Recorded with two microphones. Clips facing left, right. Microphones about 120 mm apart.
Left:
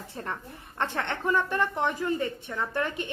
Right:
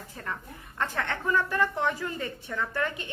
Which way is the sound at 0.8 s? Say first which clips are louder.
Left 1 dB; 25° left (ahead or behind).